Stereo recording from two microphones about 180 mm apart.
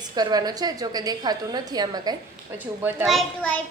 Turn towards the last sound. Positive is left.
turn(degrees=5)  # may be behind; listen again after turning